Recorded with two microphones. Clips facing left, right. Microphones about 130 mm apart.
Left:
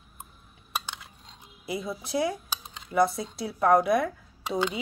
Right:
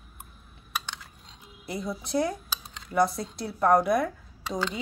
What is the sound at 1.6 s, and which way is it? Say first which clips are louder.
Speech: even; 5° left (ahead or behind).